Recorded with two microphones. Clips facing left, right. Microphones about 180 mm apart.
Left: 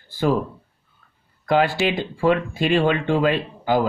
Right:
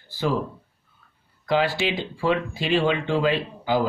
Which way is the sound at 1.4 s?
50° left (ahead or behind).